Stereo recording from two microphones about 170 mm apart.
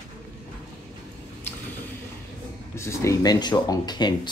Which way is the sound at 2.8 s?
15° left (ahead or behind).